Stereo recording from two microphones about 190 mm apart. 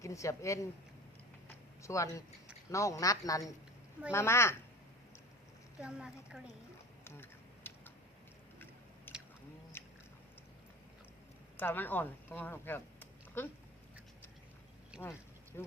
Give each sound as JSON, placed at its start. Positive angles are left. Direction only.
{"t": 0.0, "sound": "speech", "side_deg": 15}
{"t": 1.8, "sound": "speech", "side_deg": 15}
{"t": 5.8, "sound": "a woman's voice", "side_deg": -5}
{"t": 7.0, "sound": "typing", "side_deg": 10}
{"t": 9.1, "sound": "chewing", "side_deg": 10}
{"t": 9.8, "sound": "a sound", "side_deg": 10}
{"t": 11.5, "sound": "speech", "side_deg": 10}
{"t": 15.0, "sound": "speech", "side_deg": 10}